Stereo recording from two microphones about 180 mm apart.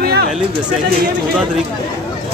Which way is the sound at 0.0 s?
60° right (ahead or behind).